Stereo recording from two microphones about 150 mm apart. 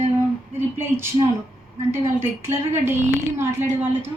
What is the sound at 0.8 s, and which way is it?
Speech, 15° right (ahead or behind).